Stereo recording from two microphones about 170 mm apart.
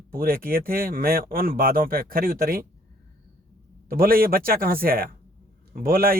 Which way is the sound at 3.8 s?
60° right (ahead or behind).